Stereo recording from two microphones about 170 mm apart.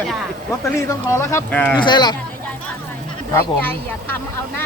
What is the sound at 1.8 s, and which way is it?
Speech, 25° left (ahead or behind).